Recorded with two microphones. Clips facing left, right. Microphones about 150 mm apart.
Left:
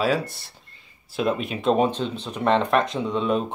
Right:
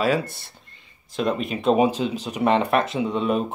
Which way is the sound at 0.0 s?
Centre (ahead or behind).